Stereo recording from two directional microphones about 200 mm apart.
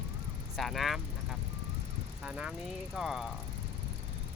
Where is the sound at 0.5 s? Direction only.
Centre (ahead or behind).